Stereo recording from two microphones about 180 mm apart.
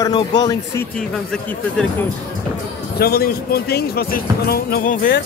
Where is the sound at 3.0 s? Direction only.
60° left (ahead or behind).